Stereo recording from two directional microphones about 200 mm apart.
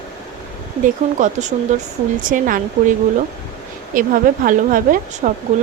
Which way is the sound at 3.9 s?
45° right (ahead or behind).